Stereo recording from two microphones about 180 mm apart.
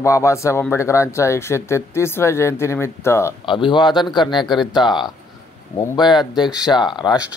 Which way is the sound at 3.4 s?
25° left (ahead or behind).